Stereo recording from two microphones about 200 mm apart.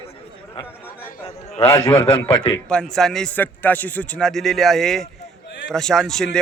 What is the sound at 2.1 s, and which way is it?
Speech, 30° left (ahead or behind).